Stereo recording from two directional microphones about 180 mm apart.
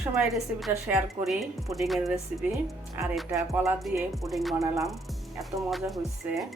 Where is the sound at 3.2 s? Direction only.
15° right (ahead or behind).